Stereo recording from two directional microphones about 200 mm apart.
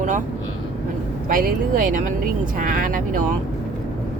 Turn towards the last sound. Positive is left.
turn(degrees=-40)  # may be behind; listen again after turning